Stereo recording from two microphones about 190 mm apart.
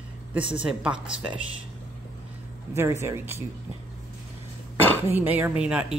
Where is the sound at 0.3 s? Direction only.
25° right (ahead or behind).